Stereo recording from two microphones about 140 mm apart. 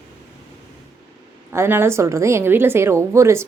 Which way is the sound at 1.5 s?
20° right (ahead or behind).